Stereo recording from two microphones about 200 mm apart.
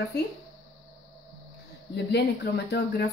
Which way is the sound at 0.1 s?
55° left (ahead or behind).